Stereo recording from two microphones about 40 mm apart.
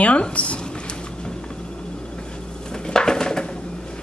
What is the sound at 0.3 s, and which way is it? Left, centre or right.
Speech, left.